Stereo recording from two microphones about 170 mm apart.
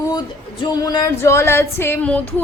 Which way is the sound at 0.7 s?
25° left (ahead or behind).